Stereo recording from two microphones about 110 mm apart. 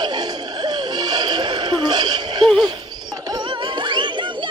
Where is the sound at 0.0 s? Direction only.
40° right (ahead or behind).